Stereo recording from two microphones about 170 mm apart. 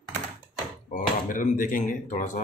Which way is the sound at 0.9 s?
50° left (ahead or behind).